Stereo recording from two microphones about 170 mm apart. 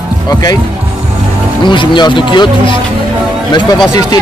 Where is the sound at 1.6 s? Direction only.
30° left (ahead or behind).